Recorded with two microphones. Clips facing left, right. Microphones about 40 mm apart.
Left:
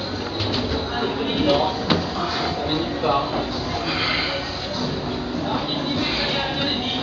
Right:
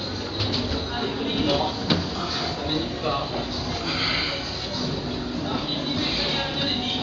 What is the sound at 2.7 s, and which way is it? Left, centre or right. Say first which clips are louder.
Music: left 5 dB; centre.